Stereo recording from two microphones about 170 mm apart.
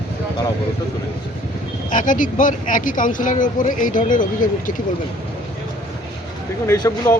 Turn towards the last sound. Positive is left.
turn(degrees=15)  # may be behind; listen again after turning